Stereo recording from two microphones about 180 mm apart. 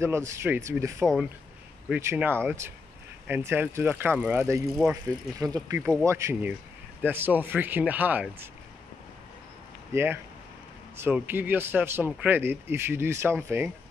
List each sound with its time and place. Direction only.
0.0 s speech: 15° right (ahead or behind)
5.4 s speech: 20° right (ahead or behind)
9.9 s speech: 15° right (ahead or behind)